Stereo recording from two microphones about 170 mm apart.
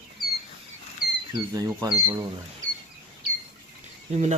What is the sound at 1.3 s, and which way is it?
Speech, 20° right (ahead or behind).